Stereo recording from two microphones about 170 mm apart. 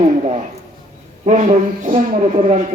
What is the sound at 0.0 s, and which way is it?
A man's voice, 40° right (ahead or behind).